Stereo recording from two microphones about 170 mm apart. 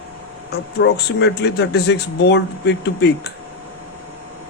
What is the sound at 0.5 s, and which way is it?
Speech, 75° left (ahead or behind).